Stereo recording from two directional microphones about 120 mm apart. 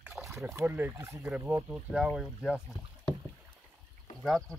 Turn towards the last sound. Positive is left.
turn(degrees=5)  # may be behind; listen again after turning